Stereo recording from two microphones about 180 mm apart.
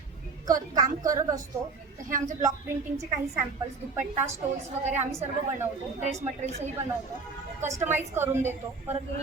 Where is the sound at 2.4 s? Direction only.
15° right (ahead or behind).